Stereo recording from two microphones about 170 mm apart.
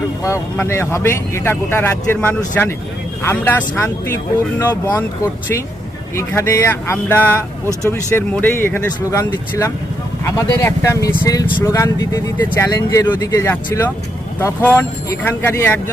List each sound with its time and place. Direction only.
0.5 s speech: 15° left (ahead or behind)